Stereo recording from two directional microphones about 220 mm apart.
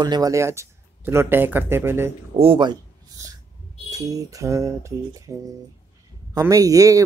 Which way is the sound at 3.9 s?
15° right (ahead or behind).